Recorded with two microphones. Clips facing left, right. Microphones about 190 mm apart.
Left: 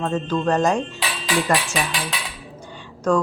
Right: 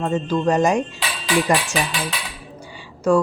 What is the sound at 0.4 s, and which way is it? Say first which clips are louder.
Speech: right 2 dB; 15° right (ahead or behind).